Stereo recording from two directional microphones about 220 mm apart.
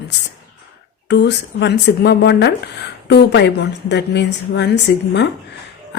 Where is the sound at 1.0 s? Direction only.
50° left (ahead or behind).